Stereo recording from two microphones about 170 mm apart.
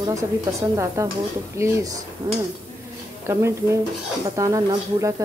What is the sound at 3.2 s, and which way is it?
A woman's voice, 15° right (ahead or behind).